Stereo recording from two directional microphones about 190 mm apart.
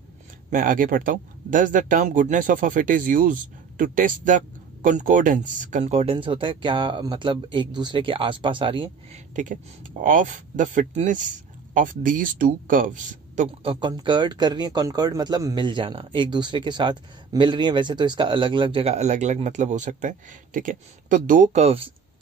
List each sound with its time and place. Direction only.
0.5 s speech: 45° right (ahead or behind); by 9.2 s 25° right (ahead or behind)
9.3 s speech: 40° right (ahead or behind)
13.4 s speech: 25° right (ahead or behind)